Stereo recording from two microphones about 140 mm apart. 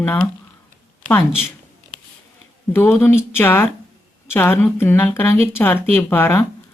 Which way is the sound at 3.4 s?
15° left (ahead or behind).